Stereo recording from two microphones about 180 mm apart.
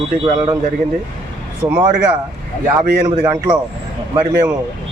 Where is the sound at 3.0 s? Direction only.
25° right (ahead or behind).